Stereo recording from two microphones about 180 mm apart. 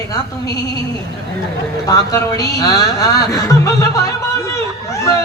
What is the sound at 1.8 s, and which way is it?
Speech, 20° left (ahead or behind).